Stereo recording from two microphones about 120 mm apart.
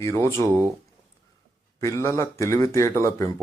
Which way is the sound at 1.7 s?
25° left (ahead or behind).